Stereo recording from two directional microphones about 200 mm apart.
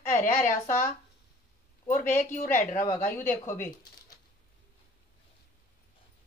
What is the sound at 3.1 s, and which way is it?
Speech, 10° left (ahead or behind).